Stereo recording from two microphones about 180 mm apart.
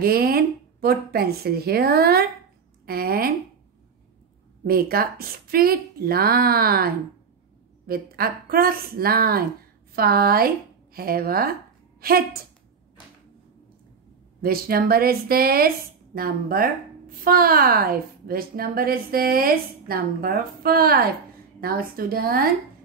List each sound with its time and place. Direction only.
0.0 s a woman's voice: 55° right (ahead or behind)
4.6 s a woman's voice: 55° right (ahead or behind)
14.4 s a woman's voice: 55° right (ahead or behind)